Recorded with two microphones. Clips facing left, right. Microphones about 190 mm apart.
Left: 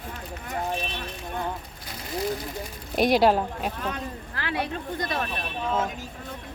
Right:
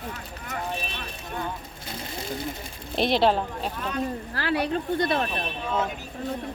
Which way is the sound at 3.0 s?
10° left (ahead or behind).